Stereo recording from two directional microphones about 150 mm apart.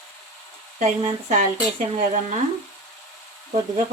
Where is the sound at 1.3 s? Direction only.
55° right (ahead or behind).